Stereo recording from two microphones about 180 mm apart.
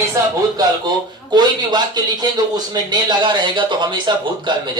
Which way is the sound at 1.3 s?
25° right (ahead or behind).